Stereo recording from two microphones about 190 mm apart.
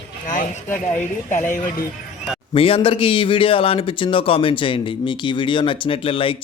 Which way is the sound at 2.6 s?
30° left (ahead or behind).